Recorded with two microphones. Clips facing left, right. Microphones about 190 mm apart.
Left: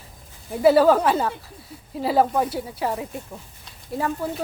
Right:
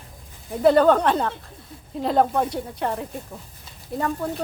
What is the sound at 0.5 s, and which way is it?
A woman's voice, 5° left (ahead or behind).